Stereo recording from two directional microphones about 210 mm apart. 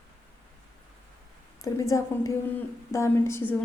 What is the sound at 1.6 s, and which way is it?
A woman's voice, 15° left (ahead or behind).